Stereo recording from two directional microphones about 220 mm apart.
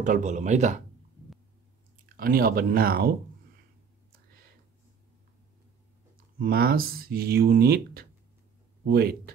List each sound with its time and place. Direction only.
0.0 s speech: 35° right (ahead or behind)
2.0 s speech: 40° right (ahead or behind)
6.1 s speech: 40° right (ahead or behind)